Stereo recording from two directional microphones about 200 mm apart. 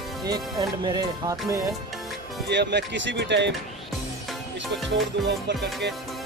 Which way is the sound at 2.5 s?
60° right (ahead or behind).